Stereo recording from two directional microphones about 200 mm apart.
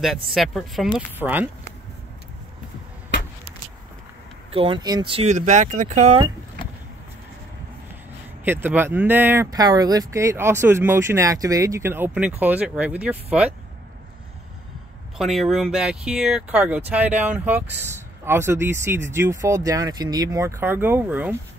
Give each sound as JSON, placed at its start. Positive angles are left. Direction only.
{"t": 0.3, "sound": "a woman's voice", "side_deg": 0}
{"t": 4.5, "sound": "speech", "side_deg": -25}
{"t": 8.5, "sound": "speech", "side_deg": -10}
{"t": 15.1, "sound": "speech", "side_deg": 0}